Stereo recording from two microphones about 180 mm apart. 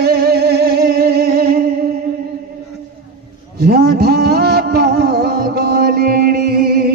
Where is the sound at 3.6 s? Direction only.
60° right (ahead or behind).